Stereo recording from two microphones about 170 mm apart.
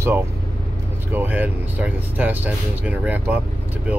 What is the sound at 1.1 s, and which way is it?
Speech, 10° right (ahead or behind).